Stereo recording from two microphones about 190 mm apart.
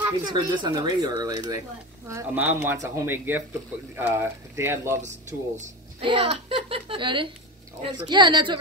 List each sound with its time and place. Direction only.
0.0 s speech: 25° right (ahead or behind)
5.6 s a woman's voice: 30° right (ahead or behind)